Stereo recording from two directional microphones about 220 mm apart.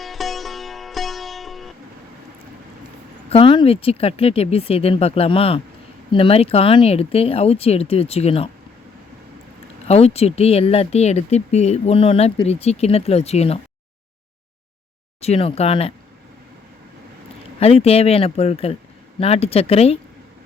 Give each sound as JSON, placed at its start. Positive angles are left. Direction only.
{"t": 0.0, "sound": "music", "side_deg": 0}
{"t": 3.2, "sound": "speech", "side_deg": 25}
{"t": 9.8, "sound": "speech", "side_deg": 30}
{"t": 15.2, "sound": "speech", "side_deg": 25}
{"t": 17.6, "sound": "speech", "side_deg": 25}